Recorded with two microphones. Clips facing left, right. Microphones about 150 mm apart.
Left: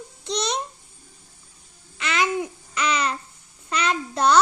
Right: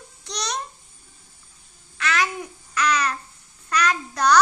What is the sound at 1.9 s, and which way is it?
Babbling, 20° left (ahead or behind).